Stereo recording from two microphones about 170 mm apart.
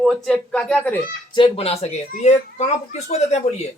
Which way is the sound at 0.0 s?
5° left (ahead or behind).